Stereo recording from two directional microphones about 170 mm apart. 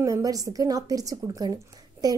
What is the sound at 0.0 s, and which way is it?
A woman's voice, 20° right (ahead or behind).